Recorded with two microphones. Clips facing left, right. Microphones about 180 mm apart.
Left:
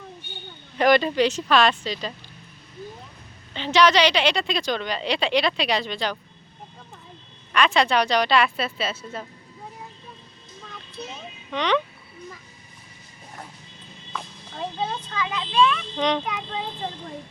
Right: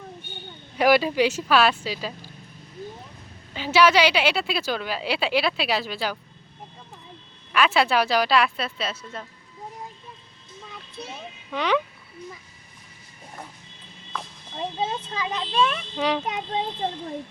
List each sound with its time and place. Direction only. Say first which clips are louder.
0.8 s speech: even; 5° right (ahead or behind)
3.5 s a woman's voice: even; 5° right (ahead or behind)
7.5 s a woman's voice: even; 5° right (ahead or behind)
11.5 s speech: left 1 dB; 5° right (ahead or behind)
14.5 s a child's voice: right 1 dB; 20° right (ahead or behind); by 15.8 s 45° right (ahead or behind)
16.0 s speech: even; 5° right (ahead or behind)
16.2 s a child's voice: right 3 dB; 35° right (ahead or behind)